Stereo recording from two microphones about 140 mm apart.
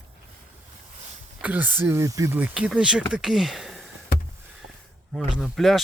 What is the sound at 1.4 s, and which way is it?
Speech, 10° right (ahead or behind).